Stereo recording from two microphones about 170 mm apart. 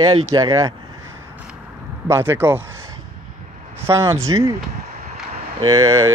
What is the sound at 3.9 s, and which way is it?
Speech, 15° right (ahead or behind).